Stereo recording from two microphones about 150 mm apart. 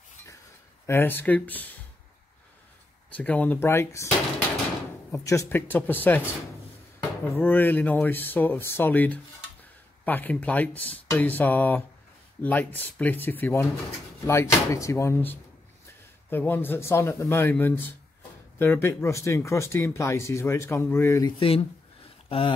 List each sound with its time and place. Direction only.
0.8 s speech: 15° left (ahead or behind)
3.2 s speech: 10° left (ahead or behind)
5.1 s speech: 20° left (ahead or behind)
21.4 s speech: 35° left (ahead or behind)